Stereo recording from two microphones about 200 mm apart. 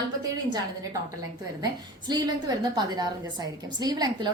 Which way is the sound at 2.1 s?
20° right (ahead or behind).